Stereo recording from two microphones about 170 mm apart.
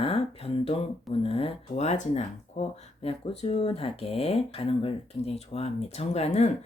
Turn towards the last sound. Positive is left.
turn(degrees=40)  # may be behind; listen again after turning